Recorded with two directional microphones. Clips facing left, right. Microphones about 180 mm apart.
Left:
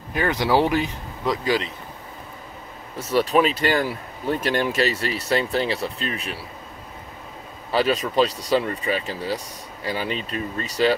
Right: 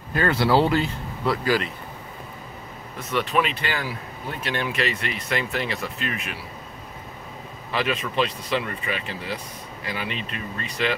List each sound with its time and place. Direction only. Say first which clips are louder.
0.1 s speech: even; 15° left (ahead or behind)
3.0 s speech: left 5 dB; 40° left (ahead or behind)
7.7 s speech: left 5 dB; 35° left (ahead or behind)